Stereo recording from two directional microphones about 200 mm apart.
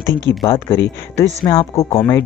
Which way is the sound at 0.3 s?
10° left (ahead or behind).